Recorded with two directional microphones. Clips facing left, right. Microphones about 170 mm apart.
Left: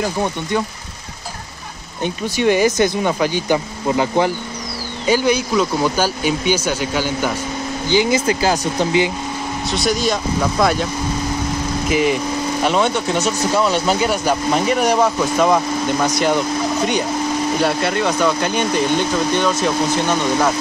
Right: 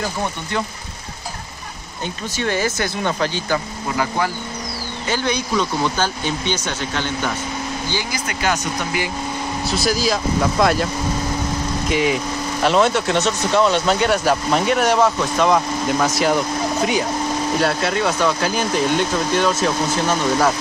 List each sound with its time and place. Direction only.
2.0 s speech: 15° left (ahead or behind)
5.0 s speech: 10° left (ahead or behind)
7.9 s speech: 20° left (ahead or behind)
8.3 s speech: 30° left (ahead or behind)
9.7 s speech: centre (ahead or behind)
11.9 s speech: centre (ahead or behind)